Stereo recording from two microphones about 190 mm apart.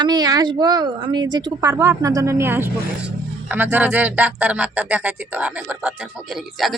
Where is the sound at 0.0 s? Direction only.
20° right (ahead or behind).